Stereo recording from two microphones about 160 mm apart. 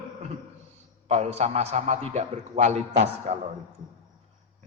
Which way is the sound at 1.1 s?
45° right (ahead or behind).